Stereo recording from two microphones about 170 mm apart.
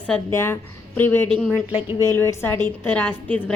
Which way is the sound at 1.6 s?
10° right (ahead or behind).